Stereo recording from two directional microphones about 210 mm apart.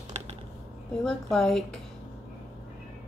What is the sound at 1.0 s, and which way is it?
Speech, centre (ahead or behind).